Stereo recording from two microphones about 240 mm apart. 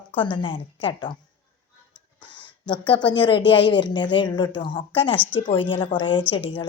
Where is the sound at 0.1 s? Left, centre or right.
Left.